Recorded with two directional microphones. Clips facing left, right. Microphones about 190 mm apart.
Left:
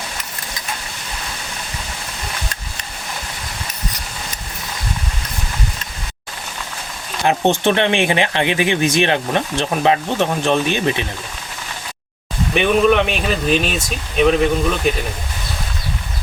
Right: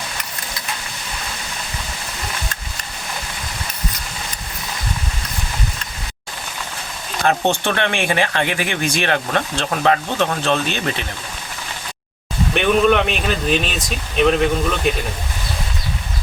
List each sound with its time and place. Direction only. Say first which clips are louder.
7.3 s speech: left 3 dB; 15° left (ahead or behind)
12.5 s speech: left 1 dB; centre (ahead or behind)